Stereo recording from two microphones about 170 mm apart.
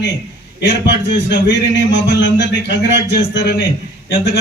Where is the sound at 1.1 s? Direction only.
90° left.